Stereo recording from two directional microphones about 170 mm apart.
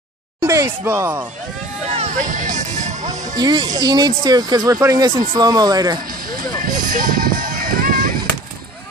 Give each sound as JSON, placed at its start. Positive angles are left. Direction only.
{"t": 0.4, "sound": "speech", "side_deg": -15}
{"t": 1.9, "sound": "music", "side_deg": -40}
{"t": 3.3, "sound": "speech", "side_deg": -25}
{"t": 6.9, "sound": "music", "side_deg": -55}